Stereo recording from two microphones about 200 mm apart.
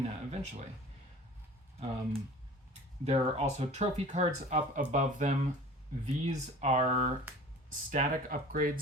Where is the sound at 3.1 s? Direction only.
30° right (ahead or behind).